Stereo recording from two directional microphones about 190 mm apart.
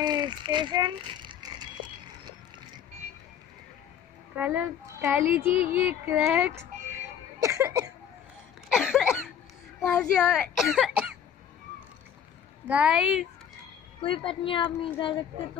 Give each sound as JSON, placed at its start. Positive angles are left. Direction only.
{"t": 0.0, "sound": "speech", "side_deg": -25}
{"t": 4.4, "sound": "a child's voice", "side_deg": -10}
{"t": 5.5, "sound": "a woman's voice", "side_deg": 30}
{"t": 5.9, "sound": "a child's voice", "side_deg": -5}
{"t": 8.6, "sound": "cough", "side_deg": -5}
{"t": 9.8, "sound": "speech", "side_deg": 5}
{"t": 12.6, "sound": "speech", "side_deg": -5}
{"t": 14.0, "sound": "a woman's voice", "side_deg": 25}